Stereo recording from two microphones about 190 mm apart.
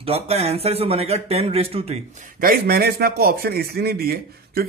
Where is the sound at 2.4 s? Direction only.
50° right (ahead or behind).